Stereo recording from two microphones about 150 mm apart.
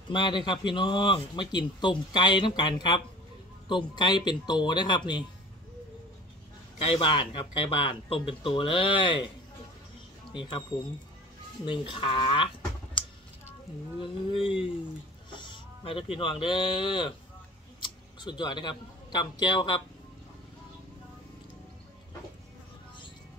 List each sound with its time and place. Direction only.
0.1 s speech: 30° left (ahead or behind)
6.8 s speech: 35° left (ahead or behind)
10.7 s speech: 20° left (ahead or behind)
11.6 s speech: 35° left (ahead or behind)
14.3 s speech: 35° left (ahead or behind)